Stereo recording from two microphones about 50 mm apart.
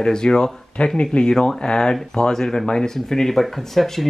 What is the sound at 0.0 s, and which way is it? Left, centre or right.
Speech, centre.